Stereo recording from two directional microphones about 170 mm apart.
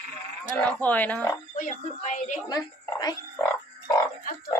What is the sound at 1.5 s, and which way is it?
Speech, 50° left (ahead or behind).